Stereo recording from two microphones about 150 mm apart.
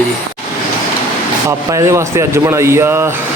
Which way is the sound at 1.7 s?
20° right (ahead or behind).